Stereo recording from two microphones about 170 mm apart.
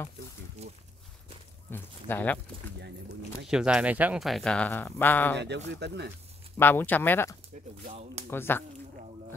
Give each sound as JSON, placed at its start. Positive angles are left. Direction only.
{"t": 0.6, "sound": "a sound", "side_deg": -40}
{"t": 1.7, "sound": "speech", "side_deg": 10}
{"t": 3.4, "sound": "speech", "side_deg": -5}
{"t": 5.8, "sound": "speech", "side_deg": -80}
{"t": 6.6, "sound": "speech", "side_deg": 10}
{"t": 7.8, "sound": "speech", "side_deg": -45}
{"t": 8.3, "sound": "speech", "side_deg": 15}